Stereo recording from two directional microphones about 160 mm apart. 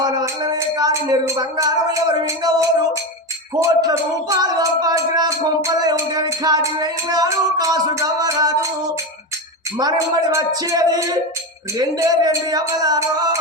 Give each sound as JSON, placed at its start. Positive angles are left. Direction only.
{"t": 0.0, "sound": "music", "side_deg": -25}
{"t": 9.7, "sound": "music", "side_deg": -25}